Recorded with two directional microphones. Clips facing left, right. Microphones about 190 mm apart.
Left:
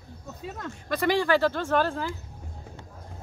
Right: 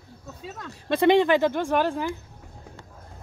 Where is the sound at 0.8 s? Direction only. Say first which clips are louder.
Right 6 dB; 25° right (ahead or behind).